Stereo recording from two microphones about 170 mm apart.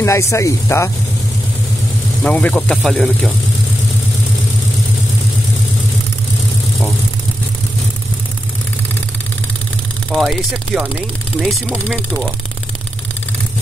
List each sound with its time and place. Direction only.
0.0 s speech: 15° left (ahead or behind)
2.2 s speech: 5° left (ahead or behind)
10.1 s speech: 5° right (ahead or behind)